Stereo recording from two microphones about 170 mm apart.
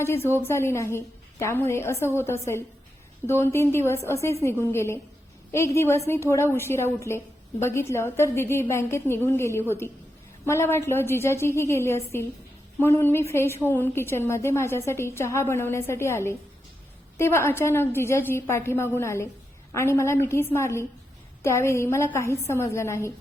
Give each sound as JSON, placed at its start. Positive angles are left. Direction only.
{"t": 0.0, "sound": "a woman's voice", "side_deg": 15}